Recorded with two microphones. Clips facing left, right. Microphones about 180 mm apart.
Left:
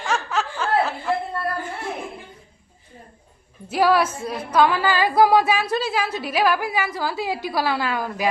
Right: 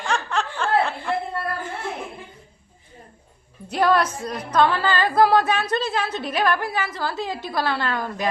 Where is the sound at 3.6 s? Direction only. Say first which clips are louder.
Left 1 dB; 5° left (ahead or behind).